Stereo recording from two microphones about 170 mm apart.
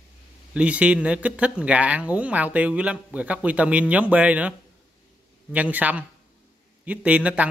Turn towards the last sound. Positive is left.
turn(degrees=-5)  # may be behind; listen again after turning